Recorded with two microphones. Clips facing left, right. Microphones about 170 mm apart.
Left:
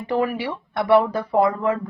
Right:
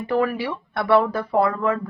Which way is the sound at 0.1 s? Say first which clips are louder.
Even; 15° left (ahead or behind).